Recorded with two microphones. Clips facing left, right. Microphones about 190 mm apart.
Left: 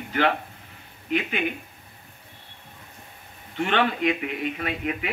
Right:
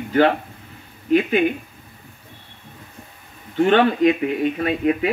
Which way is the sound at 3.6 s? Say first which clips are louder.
Right 8 dB; 35° right (ahead or behind).